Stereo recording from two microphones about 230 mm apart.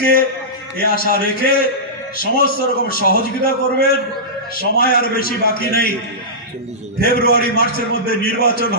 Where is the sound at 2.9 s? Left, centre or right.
Left.